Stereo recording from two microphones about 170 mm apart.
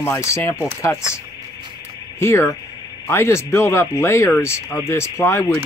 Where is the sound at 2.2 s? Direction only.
15° left (ahead or behind).